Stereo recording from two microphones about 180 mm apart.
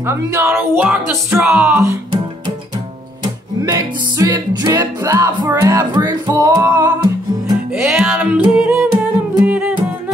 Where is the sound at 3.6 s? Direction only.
20° right (ahead or behind).